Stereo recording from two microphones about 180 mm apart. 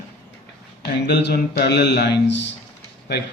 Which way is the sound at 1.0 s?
70° left (ahead or behind).